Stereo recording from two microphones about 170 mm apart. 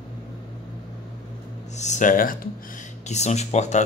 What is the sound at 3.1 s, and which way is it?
Speech, 40° left (ahead or behind).